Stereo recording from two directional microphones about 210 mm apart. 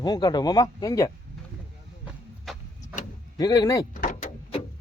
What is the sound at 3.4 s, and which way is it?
Speech, 15° left (ahead or behind).